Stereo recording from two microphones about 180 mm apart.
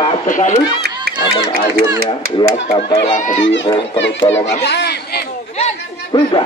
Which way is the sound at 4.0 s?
90° left.